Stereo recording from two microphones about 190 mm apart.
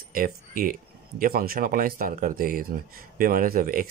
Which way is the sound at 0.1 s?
45° right (ahead or behind).